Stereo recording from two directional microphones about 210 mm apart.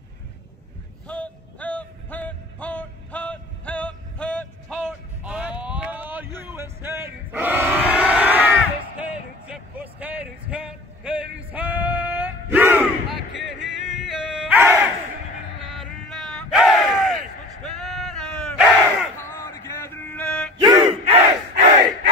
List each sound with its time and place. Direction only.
1.0 s a sound: 5° left (ahead or behind)
17.6 s crowd: centre (ahead or behind)
19.1 s male singing: 10° left (ahead or behind)
20.6 s battle cry: 30° right (ahead or behind)